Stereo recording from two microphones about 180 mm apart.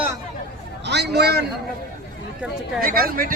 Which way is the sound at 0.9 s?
65° right (ahead or behind).